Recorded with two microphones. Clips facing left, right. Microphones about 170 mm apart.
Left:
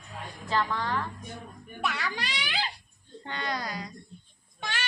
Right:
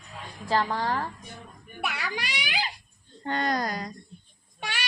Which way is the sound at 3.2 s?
45° right (ahead or behind).